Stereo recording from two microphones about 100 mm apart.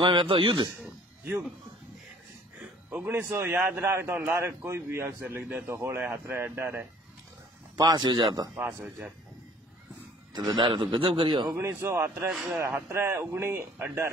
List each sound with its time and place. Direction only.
0.0 s a man's voice: 55° right (ahead or behind)
2.6 s a man's voice: 15° right (ahead or behind)
7.7 s a man's voice: 40° right (ahead or behind)
10.3 s a man's voice: 45° right (ahead or behind)
10.7 s a man's voice: 55° right (ahead or behind)
11.5 s a man's voice: 20° right (ahead or behind)
12.3 s speech: 5° right (ahead or behind)
12.5 s a man's voice: 25° right (ahead or behind)